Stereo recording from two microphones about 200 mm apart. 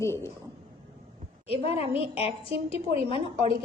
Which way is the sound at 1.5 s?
30° left (ahead or behind).